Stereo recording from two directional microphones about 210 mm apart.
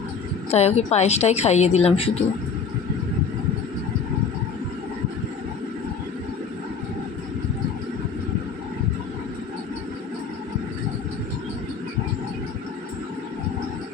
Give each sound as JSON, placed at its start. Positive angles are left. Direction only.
{"t": 0.5, "sound": "a woman's voice", "side_deg": 30}